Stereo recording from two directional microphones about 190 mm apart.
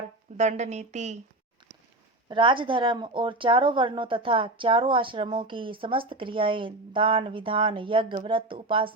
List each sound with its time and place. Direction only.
0.3 s a woman's voice: 35° right (ahead or behind)
2.3 s speech: 25° right (ahead or behind)